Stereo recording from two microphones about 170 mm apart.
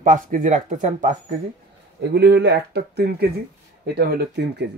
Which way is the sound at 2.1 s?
85° right.